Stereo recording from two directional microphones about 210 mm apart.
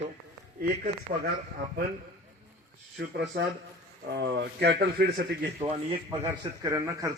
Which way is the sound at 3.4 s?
55° right (ahead or behind).